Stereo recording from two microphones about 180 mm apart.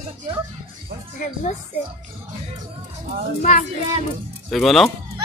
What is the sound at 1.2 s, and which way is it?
Speech, 45° left (ahead or behind).